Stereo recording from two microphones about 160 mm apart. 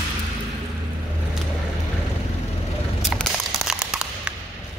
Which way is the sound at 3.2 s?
5° right (ahead or behind).